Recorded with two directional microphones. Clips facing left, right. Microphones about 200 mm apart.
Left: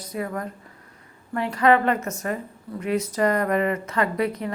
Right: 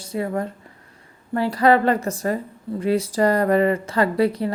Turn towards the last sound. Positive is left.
turn(degrees=-30)  # may be behind; listen again after turning